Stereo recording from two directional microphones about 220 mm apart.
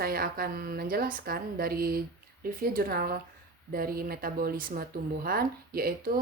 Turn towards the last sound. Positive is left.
turn(degrees=-40)  # may be behind; listen again after turning